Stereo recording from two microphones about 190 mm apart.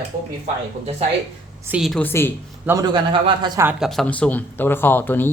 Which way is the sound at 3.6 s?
Centre (ahead or behind).